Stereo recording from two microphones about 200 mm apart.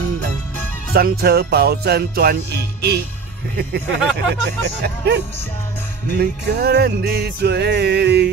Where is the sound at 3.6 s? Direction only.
55° right (ahead or behind).